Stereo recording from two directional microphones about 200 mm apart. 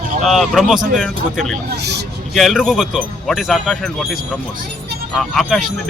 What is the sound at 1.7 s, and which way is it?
Speech, 55° right (ahead or behind).